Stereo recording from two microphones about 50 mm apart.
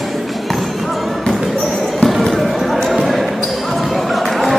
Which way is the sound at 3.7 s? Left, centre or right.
Centre.